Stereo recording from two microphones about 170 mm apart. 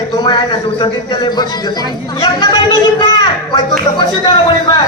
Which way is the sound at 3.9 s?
30° left (ahead or behind).